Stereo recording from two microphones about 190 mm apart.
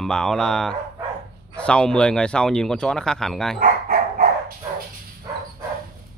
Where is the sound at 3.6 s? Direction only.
50° right (ahead or behind).